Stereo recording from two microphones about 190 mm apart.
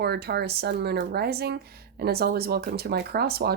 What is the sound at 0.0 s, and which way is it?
Speech, 60° right (ahead or behind).